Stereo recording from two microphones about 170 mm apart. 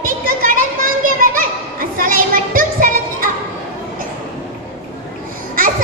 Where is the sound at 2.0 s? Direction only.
55° right (ahead or behind).